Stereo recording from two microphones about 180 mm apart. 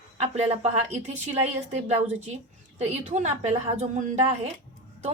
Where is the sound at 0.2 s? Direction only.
35° right (ahead or behind).